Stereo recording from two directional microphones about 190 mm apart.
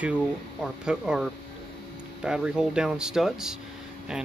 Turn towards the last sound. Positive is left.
turn(degrees=0)  # may be behind; listen again after turning